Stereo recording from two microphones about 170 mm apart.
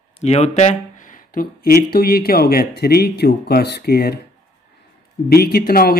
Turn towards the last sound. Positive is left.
turn(degrees=65)  # may be behind; listen again after turning